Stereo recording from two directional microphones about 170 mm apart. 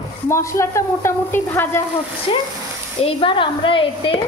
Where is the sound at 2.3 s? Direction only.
30° left (ahead or behind).